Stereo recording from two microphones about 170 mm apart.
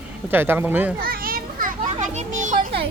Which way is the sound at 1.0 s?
60° right (ahead or behind).